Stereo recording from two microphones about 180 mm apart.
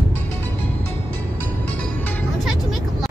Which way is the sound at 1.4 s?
10° left (ahead or behind).